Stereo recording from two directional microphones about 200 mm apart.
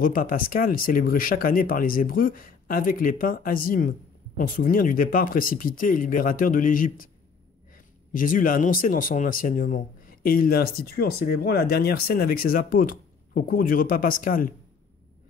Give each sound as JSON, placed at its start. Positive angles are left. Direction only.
{"t": 0.0, "sound": "speech", "side_deg": 45}